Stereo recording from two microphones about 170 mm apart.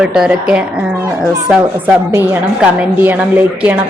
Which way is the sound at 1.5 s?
5° right (ahead or behind).